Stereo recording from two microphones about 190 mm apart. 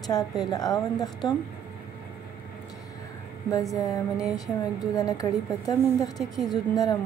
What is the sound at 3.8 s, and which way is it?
A woman's voice, 20° left (ahead or behind).